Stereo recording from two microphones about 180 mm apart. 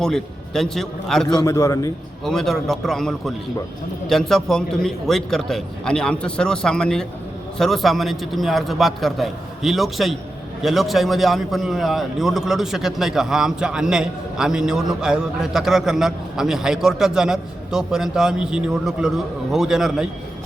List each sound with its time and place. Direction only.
0.0 s a man's voice: 5° left (ahead or behind)
1.3 s a man's voice: 20° left (ahead or behind)
2.2 s a man's voice: centre (ahead or behind)